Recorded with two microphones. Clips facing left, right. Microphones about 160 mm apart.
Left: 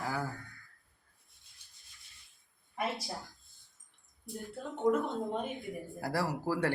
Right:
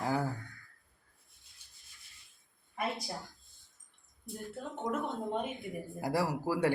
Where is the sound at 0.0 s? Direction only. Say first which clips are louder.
Right 4 dB; 25° right (ahead or behind).